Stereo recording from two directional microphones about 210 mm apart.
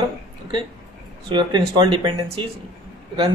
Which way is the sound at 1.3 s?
20° right (ahead or behind).